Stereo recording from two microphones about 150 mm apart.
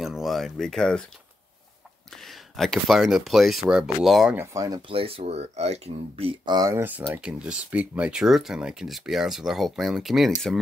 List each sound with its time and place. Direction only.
0.0 s speech: centre (ahead or behind)
2.2 s speech: centre (ahead or behind)
4.4 s speech: 25° right (ahead or behind)
6.8 s speech: 10° right (ahead or behind)